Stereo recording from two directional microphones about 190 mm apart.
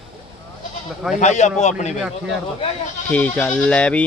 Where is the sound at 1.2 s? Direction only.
40° left (ahead or behind).